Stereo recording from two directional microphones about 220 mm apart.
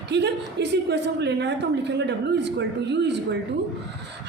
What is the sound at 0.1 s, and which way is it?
Speech, 50° right (ahead or behind).